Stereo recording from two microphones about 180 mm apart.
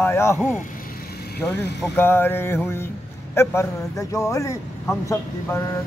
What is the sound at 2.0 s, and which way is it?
Speech, 10° left (ahead or behind).